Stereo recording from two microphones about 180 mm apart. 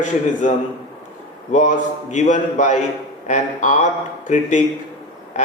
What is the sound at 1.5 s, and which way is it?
A man's voice, 40° left (ahead or behind).